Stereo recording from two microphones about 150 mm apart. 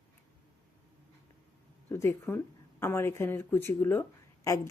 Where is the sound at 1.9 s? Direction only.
15° left (ahead or behind).